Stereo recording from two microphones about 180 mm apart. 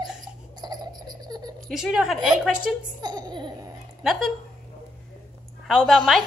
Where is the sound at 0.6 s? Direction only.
25° right (ahead or behind).